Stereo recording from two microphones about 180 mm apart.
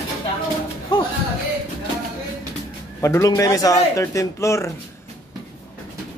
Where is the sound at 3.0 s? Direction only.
15° left (ahead or behind).